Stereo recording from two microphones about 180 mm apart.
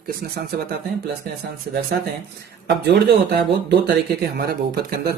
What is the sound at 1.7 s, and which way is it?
Speech, 50° right (ahead or behind).